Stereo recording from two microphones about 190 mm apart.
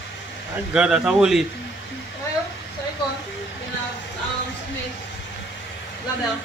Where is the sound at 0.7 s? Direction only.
5° right (ahead or behind).